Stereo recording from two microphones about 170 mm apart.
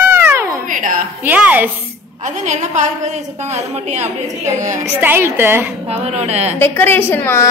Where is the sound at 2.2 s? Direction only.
45° right (ahead or behind).